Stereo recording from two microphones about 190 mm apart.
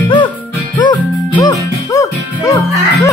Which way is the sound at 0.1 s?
25° left (ahead or behind).